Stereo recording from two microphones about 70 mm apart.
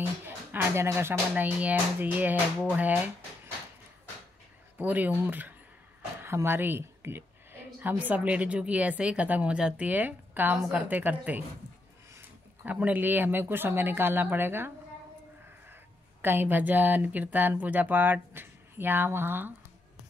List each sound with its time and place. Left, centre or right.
0.2 s music: right
1.3 s speech: right
4.7 s speech: right
8.0 s speech: centre
12.6 s speech: right
16.2 s speech: right